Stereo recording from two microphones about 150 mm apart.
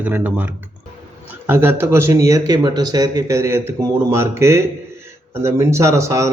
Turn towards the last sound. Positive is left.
turn(degrees=-20)  # may be behind; listen again after turning